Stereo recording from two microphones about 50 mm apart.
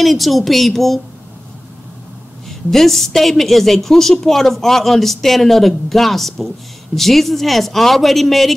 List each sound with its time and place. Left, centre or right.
0.0 s a woman's voice: centre
2.7 s a woman's voice: centre